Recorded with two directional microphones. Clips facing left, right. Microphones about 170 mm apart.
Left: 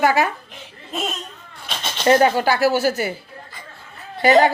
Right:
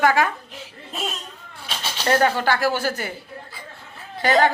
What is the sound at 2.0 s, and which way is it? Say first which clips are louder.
Speech: left 4 dB; 15° left (ahead or behind).